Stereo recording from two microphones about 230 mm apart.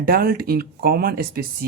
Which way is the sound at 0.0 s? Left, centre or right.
Right.